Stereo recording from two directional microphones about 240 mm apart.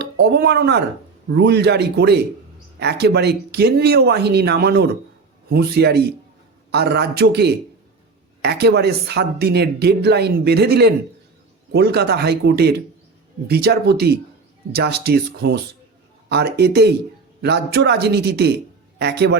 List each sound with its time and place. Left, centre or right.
0.0 s speech: right